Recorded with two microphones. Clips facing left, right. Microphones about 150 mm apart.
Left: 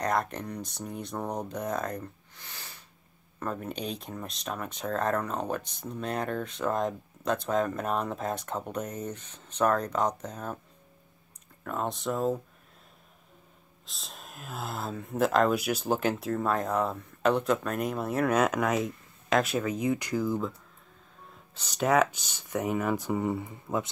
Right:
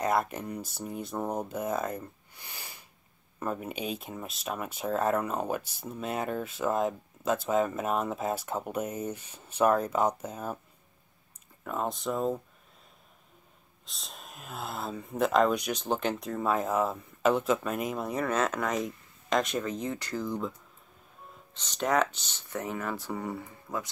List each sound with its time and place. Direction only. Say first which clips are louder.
0.0 s speech: right 1 dB; 5° right (ahead or behind)
11.6 s speech: even; centre (ahead or behind)
13.8 s speech: even; centre (ahead or behind)
21.5 s speech: left 3 dB; 10° left (ahead or behind)